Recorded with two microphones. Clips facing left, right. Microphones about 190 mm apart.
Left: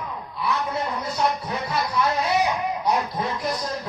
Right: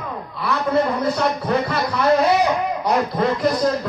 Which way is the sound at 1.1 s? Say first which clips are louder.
Right 5 dB; 70° right (ahead or behind).